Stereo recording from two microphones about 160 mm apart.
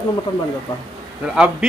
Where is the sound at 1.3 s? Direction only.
5° right (ahead or behind).